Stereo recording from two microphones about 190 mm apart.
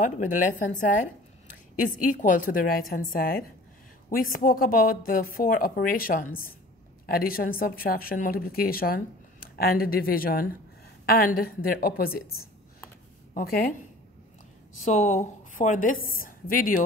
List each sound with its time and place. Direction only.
0.0 s a woman's voice: 45° left (ahead or behind)
13.3 s a woman's voice: 50° left (ahead or behind)
14.9 s a woman's voice: 35° left (ahead or behind)